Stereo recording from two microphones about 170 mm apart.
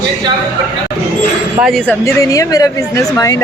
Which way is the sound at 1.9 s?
20° left (ahead or behind).